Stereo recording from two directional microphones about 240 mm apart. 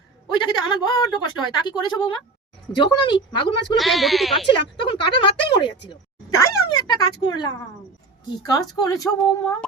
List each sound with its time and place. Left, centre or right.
0.3 s speech: centre
3.8 s speech: centre
4.5 s speech: centre